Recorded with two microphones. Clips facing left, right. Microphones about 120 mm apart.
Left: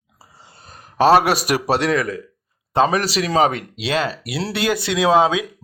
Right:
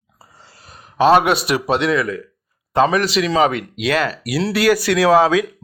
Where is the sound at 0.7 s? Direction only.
40° left (ahead or behind).